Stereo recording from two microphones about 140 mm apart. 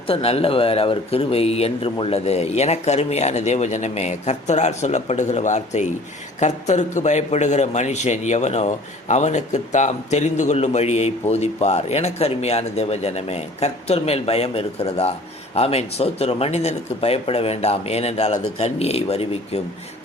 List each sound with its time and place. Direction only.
0.1 s a man's voice: 45° left (ahead or behind)